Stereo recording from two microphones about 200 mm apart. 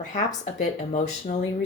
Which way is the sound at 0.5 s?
35° left (ahead or behind).